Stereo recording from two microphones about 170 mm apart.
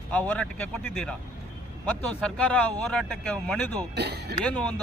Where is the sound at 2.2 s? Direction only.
5° left (ahead or behind).